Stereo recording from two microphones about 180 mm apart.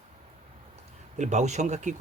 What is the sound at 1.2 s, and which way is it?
Speech, 40° right (ahead or behind).